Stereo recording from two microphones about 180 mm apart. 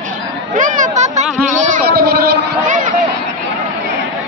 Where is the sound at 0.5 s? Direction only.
45° right (ahead or behind).